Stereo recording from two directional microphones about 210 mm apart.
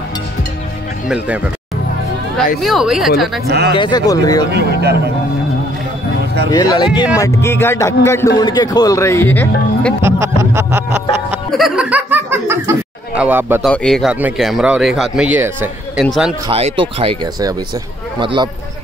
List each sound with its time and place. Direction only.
1.0 s a man's voice: 5° right (ahead or behind)
2.6 s a man's voice: centre (ahead or behind)
3.4 s speech: 50° right (ahead or behind)
3.7 s speech: 20° left (ahead or behind)
4.5 s speech: 50° right (ahead or behind)
6.5 s speech: 15° left (ahead or behind)
6.9 s a man's voice: 5° right (ahead or behind)
7.2 s speech: 15° left (ahead or behind)
10.0 s music: 15° right (ahead or behind)
11.2 s chuckle: centre (ahead or behind)
13.7 s a man's voice: 5° left (ahead or behind)
16.4 s speech: 25° right (ahead or behind)